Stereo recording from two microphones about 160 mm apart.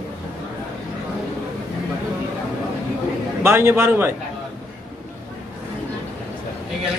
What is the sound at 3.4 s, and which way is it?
Speech, 15° right (ahead or behind).